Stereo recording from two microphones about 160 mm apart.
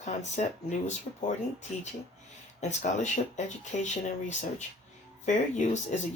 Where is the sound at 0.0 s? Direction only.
45° left (ahead or behind).